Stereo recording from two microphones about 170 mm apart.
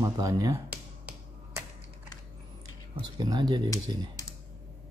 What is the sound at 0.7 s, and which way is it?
Finger snapping, 5° right (ahead or behind).